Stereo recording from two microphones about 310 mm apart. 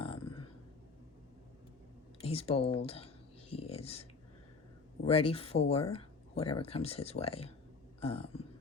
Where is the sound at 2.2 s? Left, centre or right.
Centre.